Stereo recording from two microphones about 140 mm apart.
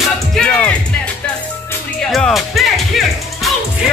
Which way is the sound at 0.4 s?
10° left (ahead or behind).